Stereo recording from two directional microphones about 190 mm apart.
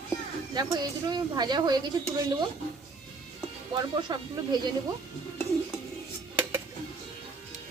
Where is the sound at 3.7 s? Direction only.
20° right (ahead or behind).